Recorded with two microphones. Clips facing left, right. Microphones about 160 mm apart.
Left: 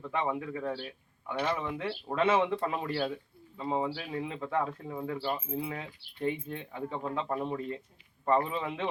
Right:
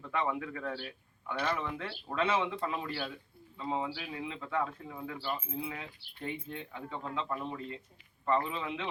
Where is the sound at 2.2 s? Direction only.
50° left (ahead or behind).